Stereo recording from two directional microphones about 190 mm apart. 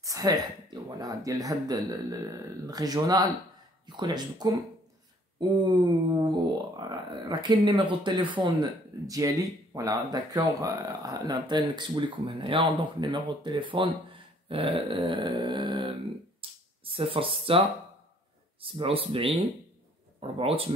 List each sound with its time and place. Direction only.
0.0 s speech: 20° right (ahead or behind)
16.3 s a sound: 30° right (ahead or behind)
18.6 s speech: 30° right (ahead or behind)